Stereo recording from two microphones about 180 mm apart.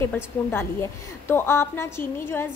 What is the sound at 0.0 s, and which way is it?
A woman's voice, 10° left (ahead or behind).